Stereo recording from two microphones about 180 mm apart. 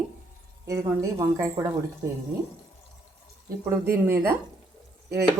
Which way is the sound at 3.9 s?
15° right (ahead or behind).